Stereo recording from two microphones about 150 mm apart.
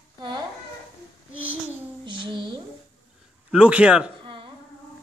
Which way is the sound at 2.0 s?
35° right (ahead or behind).